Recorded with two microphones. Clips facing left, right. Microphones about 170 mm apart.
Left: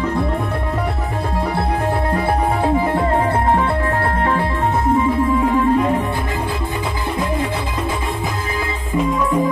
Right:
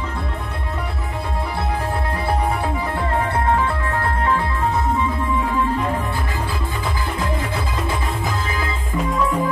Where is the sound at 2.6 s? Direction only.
30° left (ahead or behind).